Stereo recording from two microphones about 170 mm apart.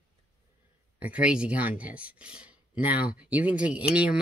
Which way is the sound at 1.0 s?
10° right (ahead or behind).